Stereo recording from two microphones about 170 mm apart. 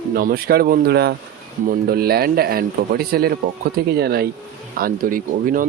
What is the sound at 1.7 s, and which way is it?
Speech, 60° right (ahead or behind).